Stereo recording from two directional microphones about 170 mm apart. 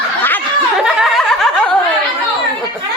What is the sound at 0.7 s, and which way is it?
Snicker, centre (ahead or behind).